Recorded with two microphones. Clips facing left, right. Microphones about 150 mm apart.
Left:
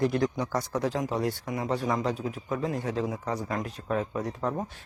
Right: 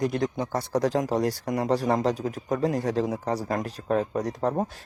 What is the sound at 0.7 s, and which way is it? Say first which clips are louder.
Speech: right 5 dB; 40° right (ahead or behind).